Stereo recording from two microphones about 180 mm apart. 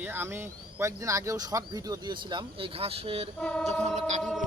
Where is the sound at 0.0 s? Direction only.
15° right (ahead or behind); by 4.2 s 40° right (ahead or behind).